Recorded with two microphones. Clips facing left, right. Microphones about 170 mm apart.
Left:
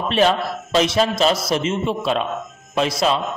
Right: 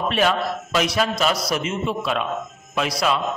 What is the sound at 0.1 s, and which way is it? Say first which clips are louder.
A man's voice: left 5 dB; 30° left (ahead or behind).